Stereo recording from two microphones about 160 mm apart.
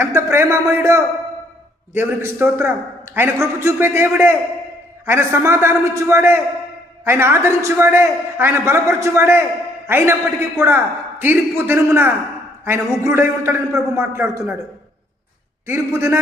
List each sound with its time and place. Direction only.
0.0 s a man's voice: 15° right (ahead or behind)
15.6 s a man's voice: 15° right (ahead or behind)